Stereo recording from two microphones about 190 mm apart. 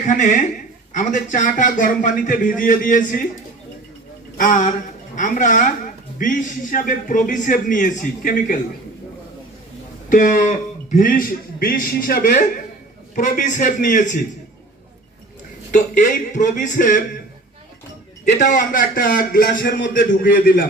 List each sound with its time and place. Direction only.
0.0 s a man's voice: 40° left (ahead or behind)
4.4 s a man's voice: 45° left (ahead or behind)
10.1 s a man's voice: 45° left (ahead or behind)
15.7 s a man's voice: 40° left (ahead or behind)
18.3 s a man's voice: 45° left (ahead or behind)